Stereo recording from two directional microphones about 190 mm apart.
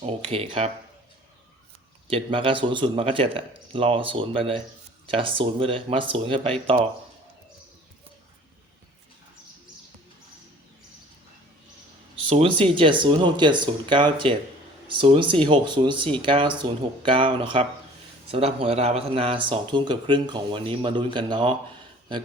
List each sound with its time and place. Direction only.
0.0 s speech: 30° right (ahead or behind)
2.0 s speech: 30° right (ahead or behind)
12.3 s speech: 30° right (ahead or behind)